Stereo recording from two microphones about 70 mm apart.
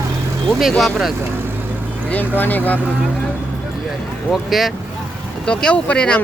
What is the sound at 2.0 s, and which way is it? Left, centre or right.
Speech, left.